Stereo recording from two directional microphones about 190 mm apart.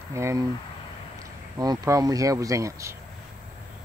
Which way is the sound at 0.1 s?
15° right (ahead or behind).